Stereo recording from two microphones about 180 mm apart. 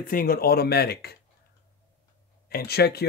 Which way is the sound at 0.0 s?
50° left (ahead or behind).